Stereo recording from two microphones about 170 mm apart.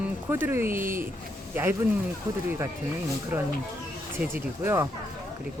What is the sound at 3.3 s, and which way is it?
Speech, 10° right (ahead or behind).